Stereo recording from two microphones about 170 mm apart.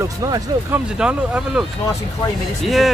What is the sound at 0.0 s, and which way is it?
Speech, 15° right (ahead or behind).